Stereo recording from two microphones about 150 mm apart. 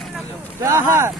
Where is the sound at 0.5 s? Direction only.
20° right (ahead or behind).